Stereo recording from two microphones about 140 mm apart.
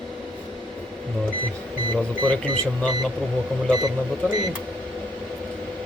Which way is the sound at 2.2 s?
10° left (ahead or behind).